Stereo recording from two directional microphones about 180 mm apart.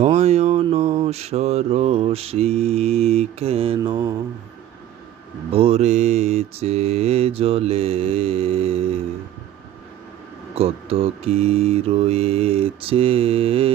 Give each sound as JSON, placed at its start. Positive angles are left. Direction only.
{"t": 0.0, "sound": "mantra", "side_deg": -40}
{"t": 5.5, "sound": "mantra", "side_deg": -35}
{"t": 10.5, "sound": "mantra", "side_deg": -35}